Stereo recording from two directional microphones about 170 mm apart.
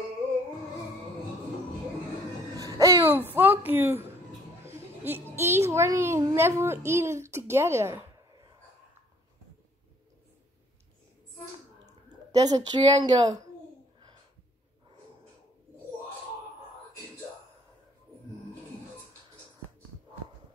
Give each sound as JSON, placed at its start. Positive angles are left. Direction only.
{"t": 2.5, "sound": "music", "side_deg": -20}
{"t": 3.3, "sound": "a child's voice", "side_deg": -10}
{"t": 4.6, "sound": "a sound", "side_deg": -15}
{"t": 5.3, "sound": "a child's voice", "side_deg": -15}
{"t": 11.8, "sound": "a woman's voice", "side_deg": -20}